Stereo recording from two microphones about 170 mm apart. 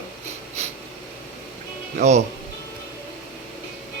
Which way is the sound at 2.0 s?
40° right (ahead or behind).